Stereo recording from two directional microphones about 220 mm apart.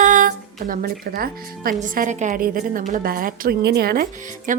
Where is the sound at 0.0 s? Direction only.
35° right (ahead or behind).